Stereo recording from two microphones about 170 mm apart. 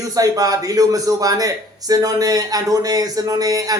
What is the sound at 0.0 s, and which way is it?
Speech, 20° right (ahead or behind).